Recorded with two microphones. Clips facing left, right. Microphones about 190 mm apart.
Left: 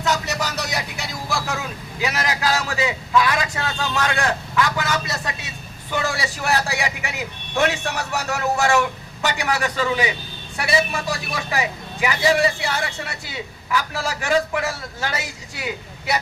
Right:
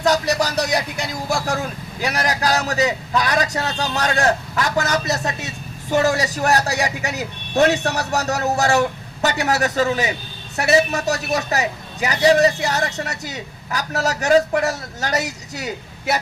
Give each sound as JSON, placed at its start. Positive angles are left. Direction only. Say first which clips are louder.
{"t": 0.0, "sound": "a man's voice", "louder": "right 5 dB", "side_deg": -35}